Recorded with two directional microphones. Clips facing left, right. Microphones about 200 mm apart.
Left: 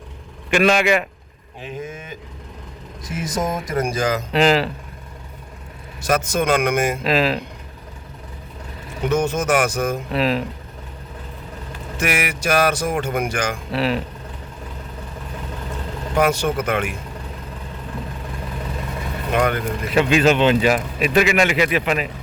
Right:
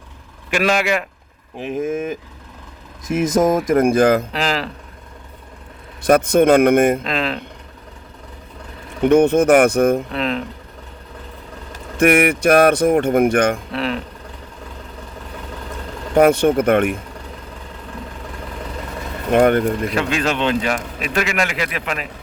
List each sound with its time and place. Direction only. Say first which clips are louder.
0.5 s a man's voice: left 2 dB; 5° right (ahead or behind)
1.7 s speech: right 11 dB; 50° right (ahead or behind)
3.2 s speech: right 8 dB; 50° right (ahead or behind)
4.3 s a man's voice: left 5 dB; centre (ahead or behind)
6.0 s speech: right 7 dB; 60° right (ahead or behind)
7.0 s a man's voice: left 3 dB; 5° left (ahead or behind)
9.0 s speech: right 8 dB; 60° right (ahead or behind)
10.1 s speech: left 2 dB; 5° left (ahead or behind)
11.9 s speech: right 9 dB; 55° right (ahead or behind)
13.7 s a man's voice: left 2 dB; 5° left (ahead or behind)
16.2 s speech: right 7 dB; 55° right (ahead or behind)
19.3 s speech: right 7 dB; 50° right (ahead or behind)
19.9 s a man's voice: left 4 dB; 5° left (ahead or behind)